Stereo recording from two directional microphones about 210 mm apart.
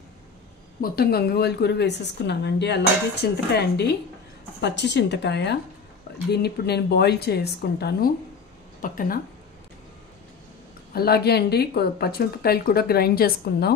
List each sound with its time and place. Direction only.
0.7 s a woman's voice: 45° left (ahead or behind)
10.9 s a woman's voice: 50° left (ahead or behind)